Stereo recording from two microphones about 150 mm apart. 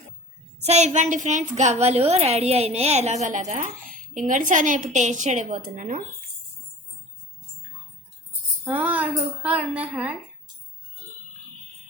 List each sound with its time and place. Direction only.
0.6 s a woman's voice: 50° right (ahead or behind)
8.6 s a woman's voice: 10° right (ahead or behind)